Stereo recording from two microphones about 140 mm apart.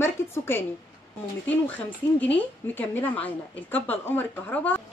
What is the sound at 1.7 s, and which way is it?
A woman's voice, 10° left (ahead or behind).